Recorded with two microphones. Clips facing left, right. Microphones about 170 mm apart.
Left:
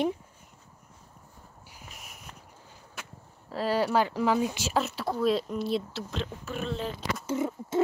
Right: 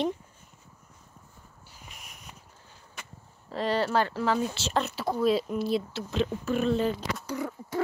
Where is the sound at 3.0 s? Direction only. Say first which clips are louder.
Left 2 dB; 5° left (ahead or behind).